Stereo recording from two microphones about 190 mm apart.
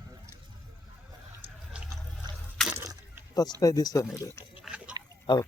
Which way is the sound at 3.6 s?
20° left (ahead or behind).